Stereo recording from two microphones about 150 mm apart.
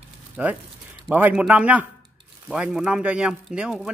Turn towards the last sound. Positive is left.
turn(degrees=-5)  # may be behind; listen again after turning